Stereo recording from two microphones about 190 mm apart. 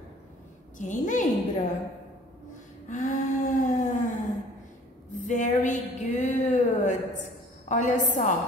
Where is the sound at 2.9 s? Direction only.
40° left (ahead or behind).